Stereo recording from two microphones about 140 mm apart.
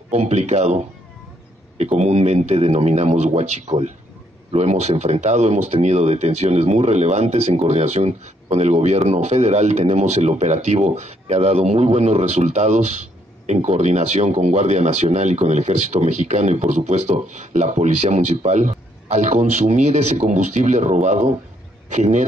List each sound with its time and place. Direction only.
0.1 s a man's voice: 50° right (ahead or behind)